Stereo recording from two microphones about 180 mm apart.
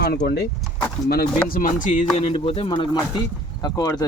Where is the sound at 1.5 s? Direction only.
50° left (ahead or behind).